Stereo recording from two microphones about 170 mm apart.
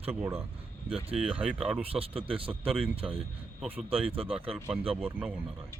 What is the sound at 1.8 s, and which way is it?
Speech, 35° right (ahead or behind).